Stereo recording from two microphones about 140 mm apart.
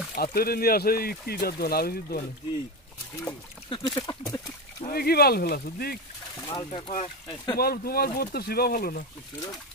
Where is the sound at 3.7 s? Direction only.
30° left (ahead or behind).